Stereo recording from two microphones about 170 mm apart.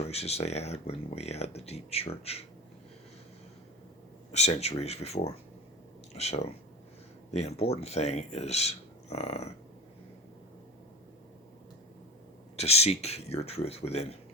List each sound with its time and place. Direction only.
0.0 s speech: 35° left (ahead or behind)
4.3 s speech: 40° left (ahead or behind)
12.5 s speech: 40° left (ahead or behind)